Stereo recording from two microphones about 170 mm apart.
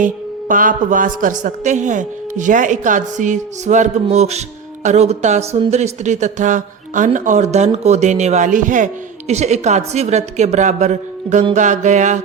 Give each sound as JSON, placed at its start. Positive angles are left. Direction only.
{"t": 0.0, "sound": "a woman's voice", "side_deg": -50}